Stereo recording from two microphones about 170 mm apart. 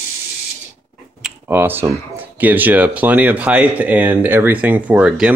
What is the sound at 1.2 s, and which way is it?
Speech, 10° right (ahead or behind).